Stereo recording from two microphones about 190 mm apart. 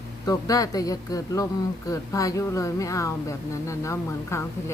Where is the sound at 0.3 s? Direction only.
20° left (ahead or behind).